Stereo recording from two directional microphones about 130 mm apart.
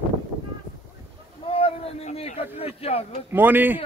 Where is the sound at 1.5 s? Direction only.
45° left (ahead or behind).